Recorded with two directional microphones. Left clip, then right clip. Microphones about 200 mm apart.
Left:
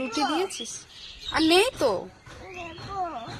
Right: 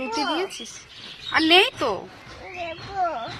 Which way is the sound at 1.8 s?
10° right (ahead or behind).